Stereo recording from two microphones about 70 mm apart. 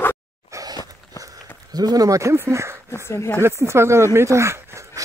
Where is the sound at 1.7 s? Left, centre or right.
Right.